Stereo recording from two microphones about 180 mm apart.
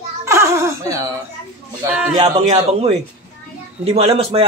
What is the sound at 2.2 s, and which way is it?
A man's voice, 30° right (ahead or behind).